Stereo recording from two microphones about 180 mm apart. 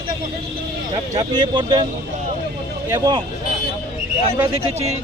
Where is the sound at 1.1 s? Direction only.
25° right (ahead or behind).